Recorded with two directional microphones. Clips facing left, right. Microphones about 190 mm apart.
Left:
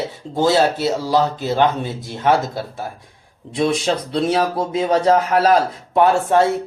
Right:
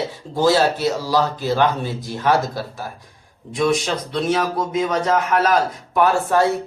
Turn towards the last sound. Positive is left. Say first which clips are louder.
# left 2 dB
turn(degrees=25)  # may be behind; listen again after turning